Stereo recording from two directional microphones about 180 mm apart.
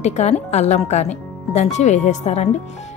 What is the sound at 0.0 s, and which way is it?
Speech, 40° left (ahead or behind).